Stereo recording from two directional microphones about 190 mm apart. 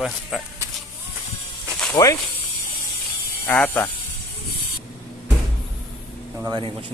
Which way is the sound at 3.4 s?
10° left (ahead or behind).